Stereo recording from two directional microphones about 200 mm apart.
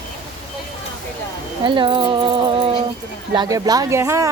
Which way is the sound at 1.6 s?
25° right (ahead or behind).